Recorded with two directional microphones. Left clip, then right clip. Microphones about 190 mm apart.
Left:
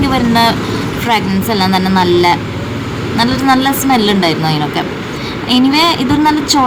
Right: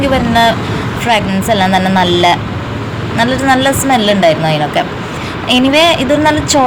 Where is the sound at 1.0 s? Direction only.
15° left (ahead or behind).